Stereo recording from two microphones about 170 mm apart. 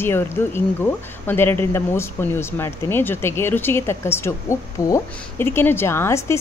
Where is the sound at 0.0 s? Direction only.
15° left (ahead or behind).